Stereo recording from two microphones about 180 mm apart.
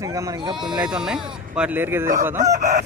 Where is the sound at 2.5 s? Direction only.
45° right (ahead or behind).